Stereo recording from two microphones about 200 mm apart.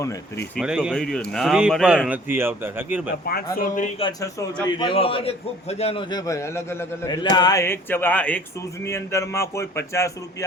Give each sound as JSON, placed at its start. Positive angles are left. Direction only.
{"t": 0.5, "sound": "speech", "side_deg": 0}
{"t": 3.2, "sound": "speech", "side_deg": 50}
{"t": 4.0, "sound": "a man's voice", "side_deg": 15}